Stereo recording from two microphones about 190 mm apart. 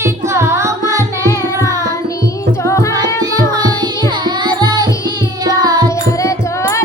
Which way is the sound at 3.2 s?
20° right (ahead or behind).